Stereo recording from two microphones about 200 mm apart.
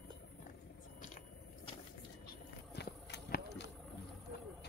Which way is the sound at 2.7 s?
55° left (ahead or behind).